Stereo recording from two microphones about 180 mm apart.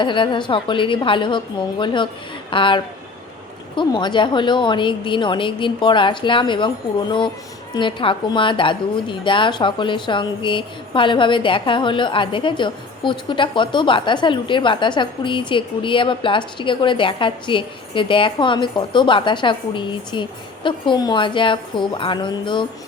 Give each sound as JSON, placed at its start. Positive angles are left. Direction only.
{"t": 0.0, "sound": "a woman's voice", "side_deg": 25}
{"t": 7.7, "sound": "a woman's voice", "side_deg": 25}